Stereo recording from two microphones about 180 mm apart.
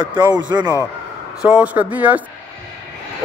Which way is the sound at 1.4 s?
5° right (ahead or behind).